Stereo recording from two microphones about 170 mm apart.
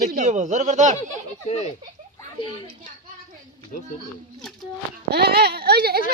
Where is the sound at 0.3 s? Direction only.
45° right (ahead or behind).